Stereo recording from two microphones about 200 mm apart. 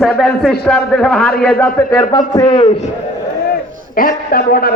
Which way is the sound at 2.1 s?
20° left (ahead or behind).